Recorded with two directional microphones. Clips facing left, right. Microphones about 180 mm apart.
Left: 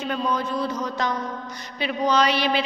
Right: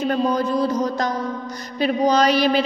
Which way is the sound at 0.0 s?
40° right (ahead or behind).